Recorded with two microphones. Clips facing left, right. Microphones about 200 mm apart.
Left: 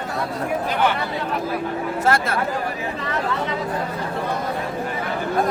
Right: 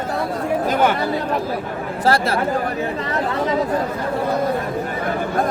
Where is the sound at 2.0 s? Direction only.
35° right (ahead or behind).